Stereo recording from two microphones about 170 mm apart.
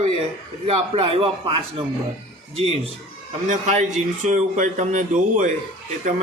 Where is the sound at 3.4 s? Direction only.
45° right (ahead or behind).